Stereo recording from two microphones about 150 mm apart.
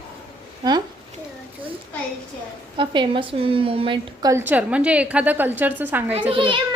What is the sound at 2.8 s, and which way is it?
A woman's voice, 35° right (ahead or behind).